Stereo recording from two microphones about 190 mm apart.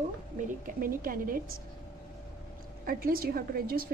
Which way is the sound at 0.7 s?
50° right (ahead or behind).